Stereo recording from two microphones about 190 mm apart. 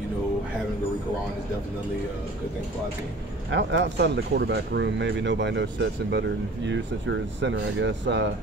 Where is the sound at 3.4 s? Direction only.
70° right (ahead or behind).